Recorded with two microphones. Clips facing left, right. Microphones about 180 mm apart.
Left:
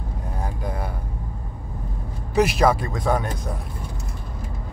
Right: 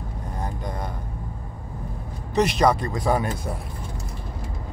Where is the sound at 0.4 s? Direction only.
5° left (ahead or behind).